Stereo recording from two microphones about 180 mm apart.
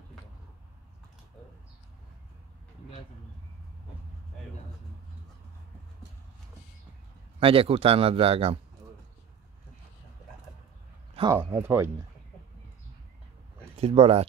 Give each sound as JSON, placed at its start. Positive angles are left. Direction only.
{"t": 7.3, "sound": "a man's voice", "side_deg": -30}
{"t": 11.3, "sound": "speech", "side_deg": -15}
{"t": 13.7, "sound": "a man's voice", "side_deg": -35}